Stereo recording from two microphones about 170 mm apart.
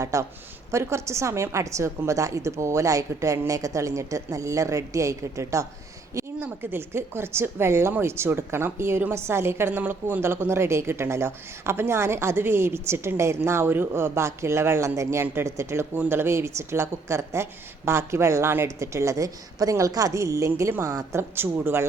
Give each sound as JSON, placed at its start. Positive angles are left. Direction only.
{"t": 0.0, "sound": "speech", "side_deg": -15}